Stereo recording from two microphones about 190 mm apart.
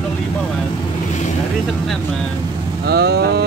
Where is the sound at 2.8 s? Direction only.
55° right (ahead or behind).